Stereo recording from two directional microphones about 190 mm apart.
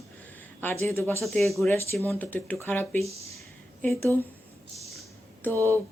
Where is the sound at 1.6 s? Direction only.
15° left (ahead or behind).